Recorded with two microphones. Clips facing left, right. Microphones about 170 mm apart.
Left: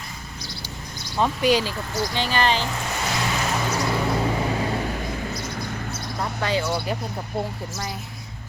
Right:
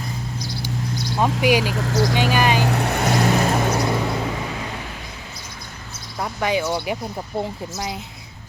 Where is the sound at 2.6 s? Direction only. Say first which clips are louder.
Right 7 dB; 70° right (ahead or behind); by 3.4 s 45° right (ahead or behind).